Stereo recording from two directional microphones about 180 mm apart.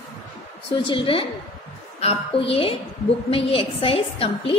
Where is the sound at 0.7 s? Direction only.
30° left (ahead or behind).